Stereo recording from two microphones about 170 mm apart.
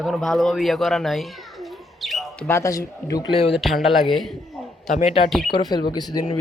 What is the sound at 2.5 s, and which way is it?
Speech, 20° left (ahead or behind).